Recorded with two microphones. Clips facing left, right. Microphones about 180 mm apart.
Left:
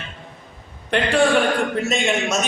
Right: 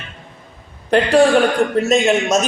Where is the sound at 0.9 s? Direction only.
40° right (ahead or behind).